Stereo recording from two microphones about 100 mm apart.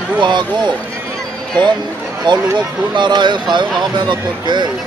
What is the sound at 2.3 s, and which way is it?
Speech, 50° right (ahead or behind).